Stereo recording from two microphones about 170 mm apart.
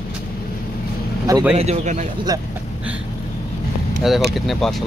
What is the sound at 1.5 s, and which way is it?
Speech, 40° right (ahead or behind).